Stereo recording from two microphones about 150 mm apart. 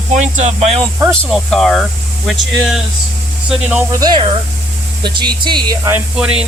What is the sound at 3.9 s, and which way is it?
Speech, 25° right (ahead or behind).